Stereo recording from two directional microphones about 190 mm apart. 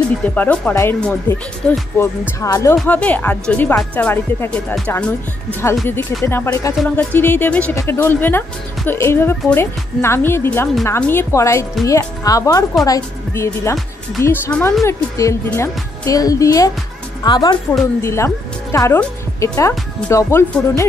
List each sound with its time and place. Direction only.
0.3 s speech: 10° left (ahead or behind)